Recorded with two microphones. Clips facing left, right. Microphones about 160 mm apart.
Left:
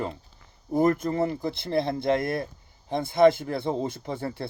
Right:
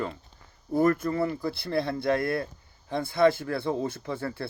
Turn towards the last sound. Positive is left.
turn(degrees=15)  # may be behind; listen again after turning